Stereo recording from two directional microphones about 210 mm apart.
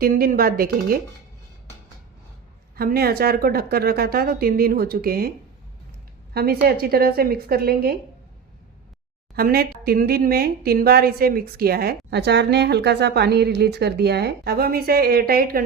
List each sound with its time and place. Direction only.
0.0 s speech: 45° right (ahead or behind)
2.7 s speech: 45° right (ahead or behind)
6.3 s speech: 50° right (ahead or behind)
9.3 s speech: 45° right (ahead or behind)